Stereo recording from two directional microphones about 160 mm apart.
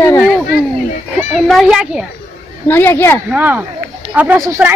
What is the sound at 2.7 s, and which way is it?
Speech, 15° left (ahead or behind).